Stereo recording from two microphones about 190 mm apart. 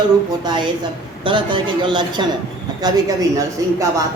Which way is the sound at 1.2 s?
25° right (ahead or behind).